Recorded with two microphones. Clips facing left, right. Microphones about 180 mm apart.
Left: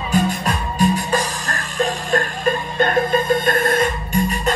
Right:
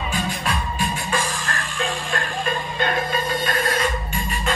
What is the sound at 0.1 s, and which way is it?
Music, 40° left (ahead or behind).